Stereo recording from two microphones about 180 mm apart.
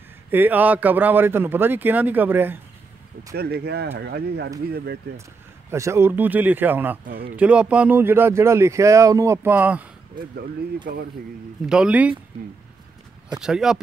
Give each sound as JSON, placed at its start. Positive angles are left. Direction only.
{"t": 0.3, "sound": "speech", "side_deg": -10}
{"t": 3.3, "sound": "speech", "side_deg": -65}
{"t": 5.7, "sound": "speech", "side_deg": -15}
{"t": 7.1, "sound": "speech", "side_deg": -60}
{"t": 7.3, "sound": "speech", "side_deg": -5}
{"t": 11.6, "sound": "speech", "side_deg": -5}
{"t": 13.4, "sound": "speech", "side_deg": -5}